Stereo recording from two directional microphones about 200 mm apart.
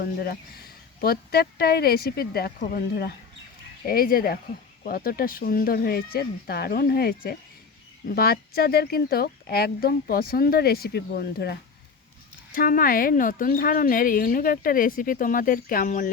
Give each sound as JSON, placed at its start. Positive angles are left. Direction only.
{"t": 0.0, "sound": "speech", "side_deg": 50}
{"t": 12.5, "sound": "speech", "side_deg": 45}